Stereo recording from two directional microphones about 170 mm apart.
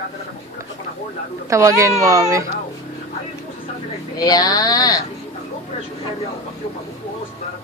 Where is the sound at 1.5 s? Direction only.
15° right (ahead or behind).